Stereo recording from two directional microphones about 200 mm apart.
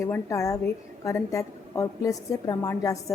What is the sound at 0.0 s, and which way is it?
A woman's voice, 15° left (ahead or behind).